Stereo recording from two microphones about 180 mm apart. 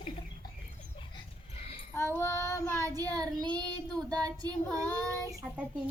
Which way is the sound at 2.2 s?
15° left (ahead or behind).